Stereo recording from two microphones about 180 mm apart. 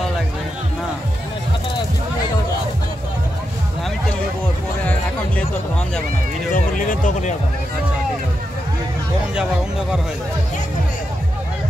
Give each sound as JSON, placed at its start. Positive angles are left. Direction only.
{"t": 6.5, "sound": "speech", "side_deg": 50}